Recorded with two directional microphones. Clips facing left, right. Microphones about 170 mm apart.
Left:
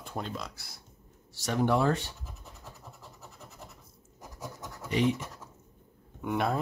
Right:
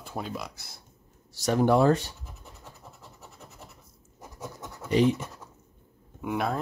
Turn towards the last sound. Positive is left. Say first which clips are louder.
# even
turn(degrees=0)  # may be behind; listen again after turning